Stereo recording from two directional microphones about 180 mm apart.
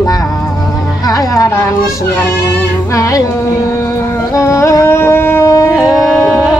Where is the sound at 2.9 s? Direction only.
20° left (ahead or behind).